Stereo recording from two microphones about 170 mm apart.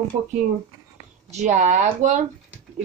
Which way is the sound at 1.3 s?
45° right (ahead or behind).